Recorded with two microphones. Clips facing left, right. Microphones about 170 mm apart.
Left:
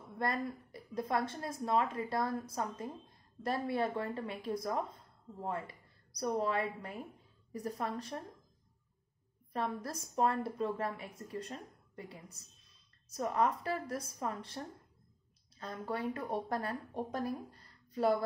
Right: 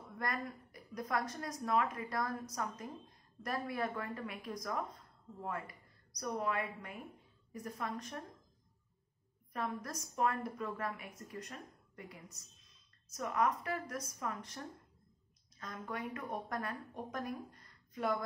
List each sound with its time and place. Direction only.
0.2 s speech: 30° left (ahead or behind)
9.5 s speech: 30° left (ahead or behind)